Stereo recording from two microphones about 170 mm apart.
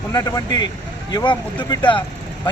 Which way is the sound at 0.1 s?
20° left (ahead or behind).